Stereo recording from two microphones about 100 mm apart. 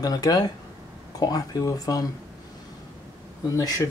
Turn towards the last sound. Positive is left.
turn(degrees=35)  # may be behind; listen again after turning